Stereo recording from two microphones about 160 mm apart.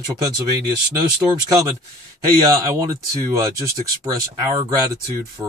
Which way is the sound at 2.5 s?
20° right (ahead or behind).